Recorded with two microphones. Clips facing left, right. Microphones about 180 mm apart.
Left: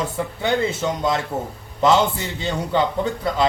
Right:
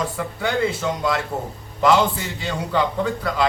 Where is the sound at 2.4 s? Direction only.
25° left (ahead or behind).